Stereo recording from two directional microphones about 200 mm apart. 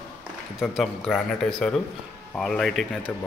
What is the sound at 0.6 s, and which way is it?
Speech, centre (ahead or behind).